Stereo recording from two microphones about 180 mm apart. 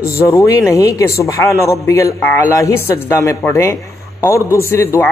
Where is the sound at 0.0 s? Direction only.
15° left (ahead or behind).